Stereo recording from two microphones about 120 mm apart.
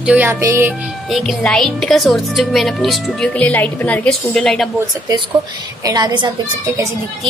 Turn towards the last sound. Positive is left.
turn(degrees=-35)  # may be behind; listen again after turning